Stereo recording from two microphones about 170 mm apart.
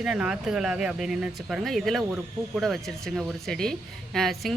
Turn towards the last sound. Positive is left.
turn(degrees=0)  # may be behind; listen again after turning